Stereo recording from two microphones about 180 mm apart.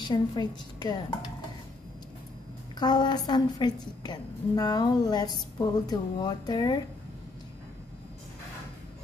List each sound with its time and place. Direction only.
0.0 s a woman's voice: 25° left (ahead or behind)
2.8 s a woman's voice: 25° left (ahead or behind)